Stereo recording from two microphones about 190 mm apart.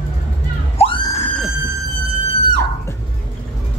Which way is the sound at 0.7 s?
25° left (ahead or behind).